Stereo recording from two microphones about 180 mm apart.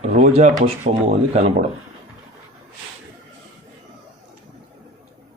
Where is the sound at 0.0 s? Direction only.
35° right (ahead or behind).